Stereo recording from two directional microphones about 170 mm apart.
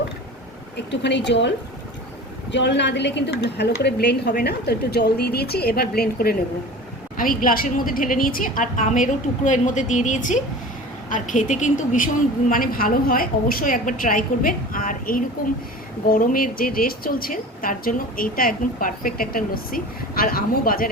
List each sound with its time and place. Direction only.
0.9 s a woman's voice: 90° left; by 20.9 s 60° left (ahead or behind)